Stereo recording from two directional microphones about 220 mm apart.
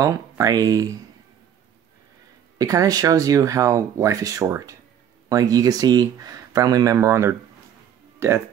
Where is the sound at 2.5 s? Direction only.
15° right (ahead or behind).